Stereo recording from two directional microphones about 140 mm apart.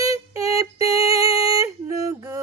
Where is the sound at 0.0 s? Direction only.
25° right (ahead or behind).